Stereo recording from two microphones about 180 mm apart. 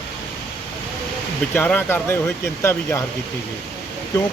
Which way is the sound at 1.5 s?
10° left (ahead or behind).